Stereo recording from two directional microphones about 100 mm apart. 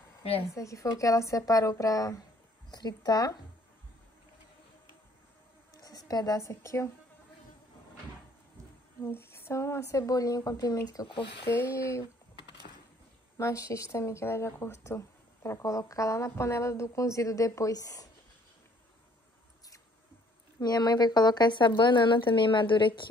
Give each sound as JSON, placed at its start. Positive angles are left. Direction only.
{"t": 0.6, "sound": "speech", "side_deg": 35}
{"t": 5.8, "sound": "a woman's voice", "side_deg": 40}
{"t": 9.0, "sound": "speech", "side_deg": 25}
{"t": 11.4, "sound": "speech", "side_deg": 25}
{"t": 13.4, "sound": "speech", "side_deg": 30}
{"t": 20.6, "sound": "a woman's voice", "side_deg": 40}